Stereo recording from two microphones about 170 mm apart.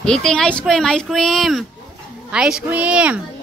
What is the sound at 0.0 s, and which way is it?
A woman's voice, 5° left (ahead or behind).